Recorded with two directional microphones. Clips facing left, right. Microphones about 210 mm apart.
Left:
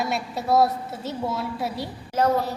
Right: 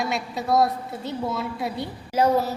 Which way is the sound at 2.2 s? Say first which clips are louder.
Right 1 dB; 10° right (ahead or behind).